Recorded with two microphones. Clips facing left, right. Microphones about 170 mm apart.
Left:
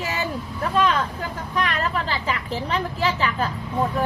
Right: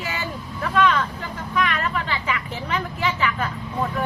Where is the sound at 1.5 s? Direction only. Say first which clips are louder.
Right 1 dB; 35° left (ahead or behind).